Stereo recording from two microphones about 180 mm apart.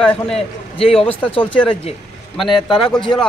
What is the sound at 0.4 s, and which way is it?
Speech, 35° left (ahead or behind).